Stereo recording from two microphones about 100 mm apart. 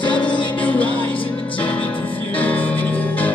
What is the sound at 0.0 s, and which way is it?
Music, 50° left (ahead or behind).